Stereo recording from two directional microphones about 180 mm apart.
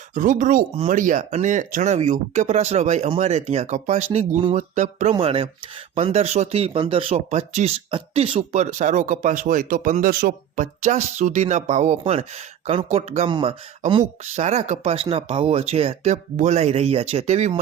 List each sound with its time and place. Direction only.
0.1 s speech: 45° right (ahead or behind)
5.1 s speech: 30° right (ahead or behind)